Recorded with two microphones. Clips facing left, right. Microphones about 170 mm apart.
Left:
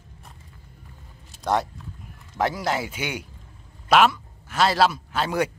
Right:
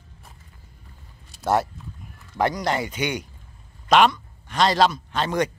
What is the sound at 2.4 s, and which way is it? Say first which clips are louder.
A man's voice: right 2 dB; 5° left (ahead or behind).